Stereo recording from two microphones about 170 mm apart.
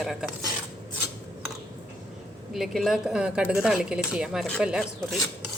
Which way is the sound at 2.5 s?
Centre (ahead or behind).